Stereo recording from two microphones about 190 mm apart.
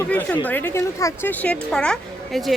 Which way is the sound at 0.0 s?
10° left (ahead or behind).